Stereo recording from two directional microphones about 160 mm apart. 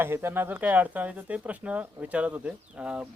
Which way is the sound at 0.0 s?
15° right (ahead or behind).